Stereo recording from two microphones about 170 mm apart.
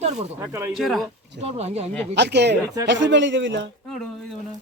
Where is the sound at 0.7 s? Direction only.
Centre (ahead or behind).